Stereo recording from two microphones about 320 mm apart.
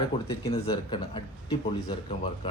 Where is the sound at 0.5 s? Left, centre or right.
Centre.